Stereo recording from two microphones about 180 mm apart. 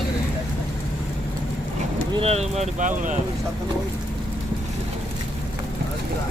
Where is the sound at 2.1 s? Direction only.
35° right (ahead or behind).